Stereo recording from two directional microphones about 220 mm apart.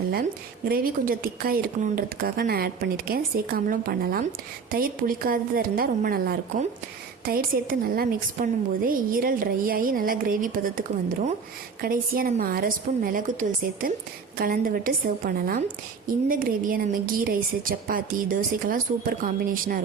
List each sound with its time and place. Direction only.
0.1 s a woman's voice: 45° right (ahead or behind)